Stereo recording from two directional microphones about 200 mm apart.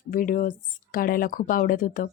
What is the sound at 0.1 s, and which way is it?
Speech, 45° left (ahead or behind).